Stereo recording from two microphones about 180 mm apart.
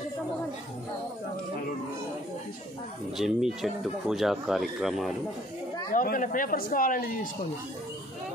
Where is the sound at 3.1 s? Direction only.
Centre (ahead or behind).